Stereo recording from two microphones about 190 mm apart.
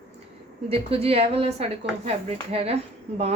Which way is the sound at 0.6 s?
30° right (ahead or behind).